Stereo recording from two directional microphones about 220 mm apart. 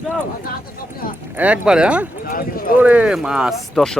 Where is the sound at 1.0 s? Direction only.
40° left (ahead or behind).